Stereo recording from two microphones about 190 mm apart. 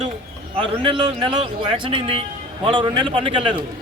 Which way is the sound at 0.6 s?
30° right (ahead or behind).